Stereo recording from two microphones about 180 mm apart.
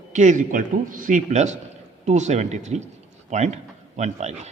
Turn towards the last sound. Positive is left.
turn(degrees=-40)  # may be behind; listen again after turning